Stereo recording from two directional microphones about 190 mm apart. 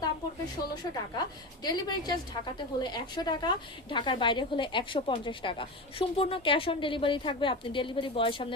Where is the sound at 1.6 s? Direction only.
20° left (ahead or behind).